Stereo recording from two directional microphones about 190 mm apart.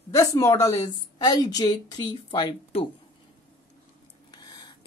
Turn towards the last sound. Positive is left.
turn(degrees=25)  # may be behind; listen again after turning